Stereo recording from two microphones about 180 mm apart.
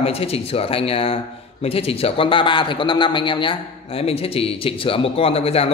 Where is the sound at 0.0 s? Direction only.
35° left (ahead or behind).